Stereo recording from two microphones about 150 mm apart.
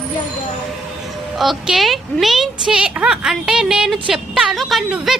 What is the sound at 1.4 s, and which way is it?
A woman's voice, centre (ahead or behind).